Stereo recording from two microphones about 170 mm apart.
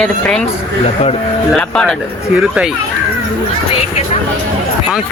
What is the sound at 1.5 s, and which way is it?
Speech, 5° left (ahead or behind).